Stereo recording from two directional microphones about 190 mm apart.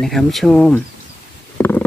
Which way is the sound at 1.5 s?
10° left (ahead or behind).